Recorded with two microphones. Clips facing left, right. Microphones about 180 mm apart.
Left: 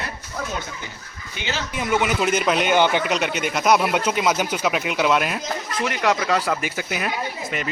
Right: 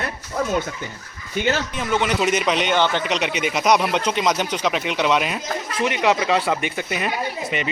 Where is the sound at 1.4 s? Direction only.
45° right (ahead or behind).